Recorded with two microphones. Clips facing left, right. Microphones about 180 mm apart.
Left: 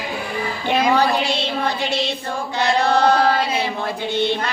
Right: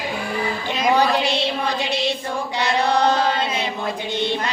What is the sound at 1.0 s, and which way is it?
Music, 15° right (ahead or behind).